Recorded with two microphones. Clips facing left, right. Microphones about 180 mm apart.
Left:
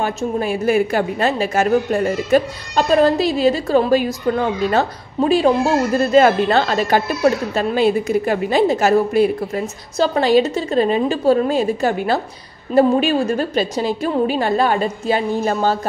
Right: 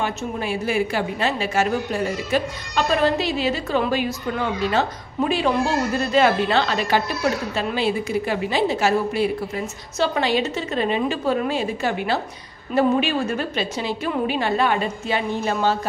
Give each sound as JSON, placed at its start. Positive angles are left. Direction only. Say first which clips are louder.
{"t": 0.0, "sound": "a woman's voice", "louder": "left 5 dB", "side_deg": 45}